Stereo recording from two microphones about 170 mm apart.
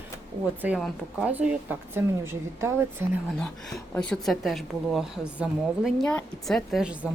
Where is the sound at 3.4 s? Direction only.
5° left (ahead or behind).